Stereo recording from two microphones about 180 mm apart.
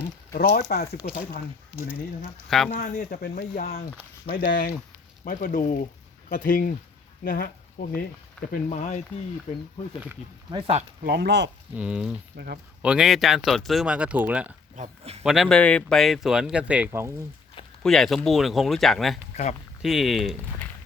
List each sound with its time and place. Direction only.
0.3 s speech: 65° left (ahead or behind)
2.6 s speech: 40° left (ahead or behind)
3.1 s speech: 60° left (ahead or behind)
8.7 s speech: 40° left (ahead or behind)
10.5 s speech: 35° right (ahead or behind)
11.0 s speech: 60° right (ahead or behind)
11.7 s speech: 5° right (ahead or behind)
12.4 s speech: 65° right (ahead or behind)
12.8 s speech: 5° right (ahead or behind)
14.8 s speech: 35° right (ahead or behind)
15.2 s speech: centre (ahead or behind)
17.8 s speech: centre (ahead or behind)